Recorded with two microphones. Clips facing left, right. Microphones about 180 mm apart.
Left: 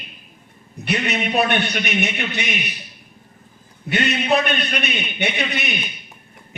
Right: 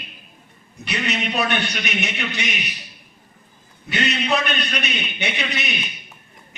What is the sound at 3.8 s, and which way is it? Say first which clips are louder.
A man's voice: left 3 dB; 60° left (ahead or behind).